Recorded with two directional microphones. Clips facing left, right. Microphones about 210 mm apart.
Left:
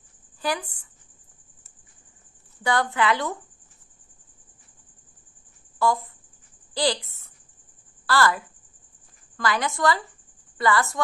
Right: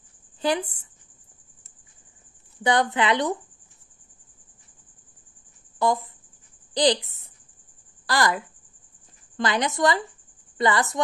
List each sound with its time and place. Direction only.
0.4 s a woman's voice: 25° right (ahead or behind)
2.6 s a woman's voice: 20° right (ahead or behind)
5.8 s a woman's voice: 20° right (ahead or behind)